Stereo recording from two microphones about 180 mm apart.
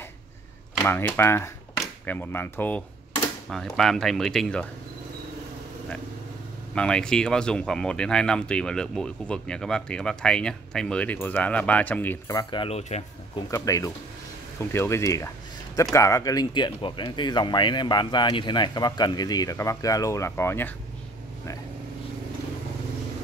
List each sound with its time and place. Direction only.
0.7 s speech: 10° left (ahead or behind)
6.7 s speech: 5° left (ahead or behind); by 13.0 s 35° left (ahead or behind)
13.5 s speech: 15° left (ahead or behind)